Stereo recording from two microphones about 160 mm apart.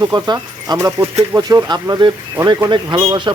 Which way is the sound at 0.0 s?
25° right (ahead or behind).